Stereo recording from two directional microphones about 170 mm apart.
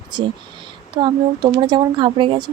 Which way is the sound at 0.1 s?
25° right (ahead or behind).